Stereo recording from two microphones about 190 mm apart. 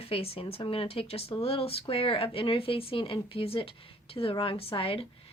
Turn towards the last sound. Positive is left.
turn(degrees=30)  # may be behind; listen again after turning